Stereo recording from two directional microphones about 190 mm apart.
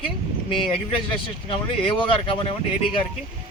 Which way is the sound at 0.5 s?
25° left (ahead or behind).